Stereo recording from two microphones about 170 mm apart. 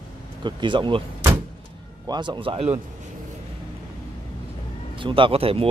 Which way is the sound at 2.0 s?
25° right (ahead or behind).